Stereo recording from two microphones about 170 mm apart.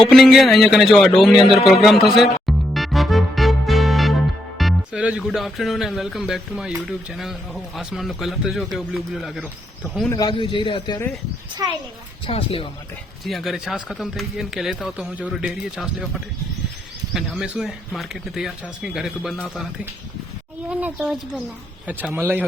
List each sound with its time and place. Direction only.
0.0 s speech: centre (ahead or behind)
10.1 s a man's voice: 25° left (ahead or behind)
11.6 s a child's voice: 25° right (ahead or behind)
12.2 s speech: 30° left (ahead or behind)
13.2 s speech: centre (ahead or behind)
20.7 s speech: 10° right (ahead or behind)